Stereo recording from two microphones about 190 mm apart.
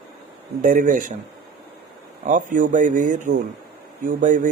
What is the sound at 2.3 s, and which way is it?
Speech, 45° right (ahead or behind).